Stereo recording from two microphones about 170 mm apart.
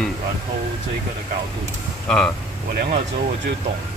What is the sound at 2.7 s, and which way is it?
Speech, 60° right (ahead or behind).